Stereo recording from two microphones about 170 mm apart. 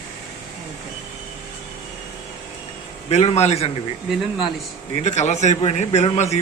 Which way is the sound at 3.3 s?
40° left (ahead or behind).